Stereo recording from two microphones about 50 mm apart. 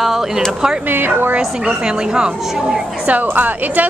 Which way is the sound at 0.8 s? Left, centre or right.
Right.